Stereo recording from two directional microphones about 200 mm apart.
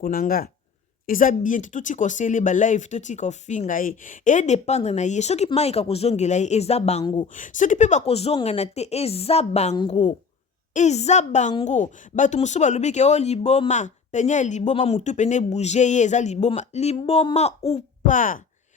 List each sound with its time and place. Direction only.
0.0 s a woman's voice: 45° left (ahead or behind); by 7.3 s 25° left (ahead or behind)
7.3 s a woman's voice: 40° left (ahead or behind)